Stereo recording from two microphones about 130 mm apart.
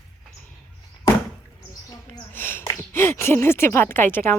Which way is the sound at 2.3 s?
15° left (ahead or behind).